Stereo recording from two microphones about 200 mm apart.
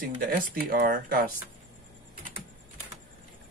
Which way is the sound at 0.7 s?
50° right (ahead or behind).